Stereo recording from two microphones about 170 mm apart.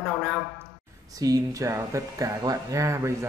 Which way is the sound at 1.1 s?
20° right (ahead or behind).